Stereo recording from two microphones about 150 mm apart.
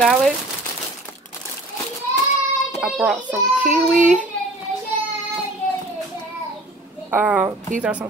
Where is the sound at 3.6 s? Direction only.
55° right (ahead or behind).